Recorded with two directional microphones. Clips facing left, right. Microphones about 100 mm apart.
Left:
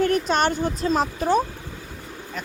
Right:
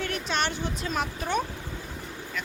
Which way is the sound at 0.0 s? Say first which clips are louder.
Left 9 dB; 45° left (ahead or behind).